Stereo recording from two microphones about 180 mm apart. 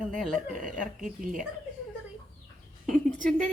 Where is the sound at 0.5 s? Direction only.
45° right (ahead or behind).